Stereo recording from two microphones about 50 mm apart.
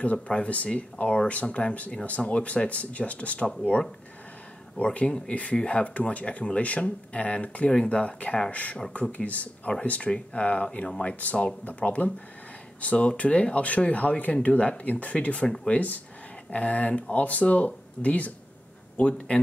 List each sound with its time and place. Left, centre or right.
0.3 s speech: left
4.8 s speech: centre